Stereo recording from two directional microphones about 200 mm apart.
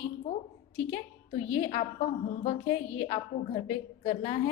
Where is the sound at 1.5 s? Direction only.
30° left (ahead or behind).